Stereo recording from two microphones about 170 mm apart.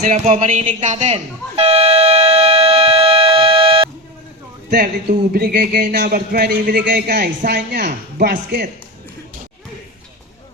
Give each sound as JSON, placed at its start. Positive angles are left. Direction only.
{"t": 0.0, "sound": "speech", "side_deg": -45}
{"t": 0.6, "sound": "air horn", "side_deg": -40}
{"t": 4.7, "sound": "speech", "side_deg": -60}